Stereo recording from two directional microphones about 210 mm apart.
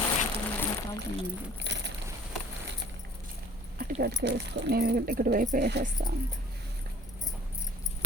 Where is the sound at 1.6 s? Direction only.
55° right (ahead or behind).